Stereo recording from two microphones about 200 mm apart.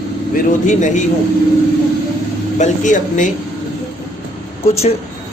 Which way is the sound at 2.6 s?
40° left (ahead or behind).